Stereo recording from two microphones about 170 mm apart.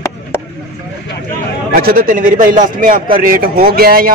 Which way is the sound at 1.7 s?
55° right (ahead or behind).